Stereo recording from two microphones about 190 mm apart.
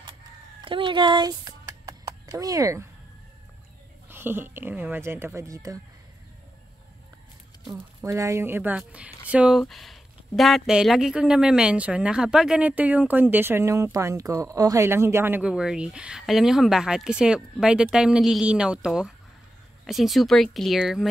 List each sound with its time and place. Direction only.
0.7 s a sound: 25° right (ahead or behind)
4.1 s speech: 10° right (ahead or behind)
8.0 s speech: 15° right (ahead or behind)